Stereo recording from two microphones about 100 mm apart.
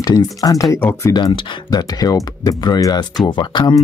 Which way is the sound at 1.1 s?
55° left (ahead or behind).